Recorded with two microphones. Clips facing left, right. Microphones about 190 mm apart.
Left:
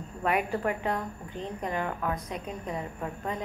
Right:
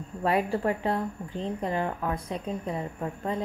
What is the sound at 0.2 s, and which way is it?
A woman's voice, 30° right (ahead or behind).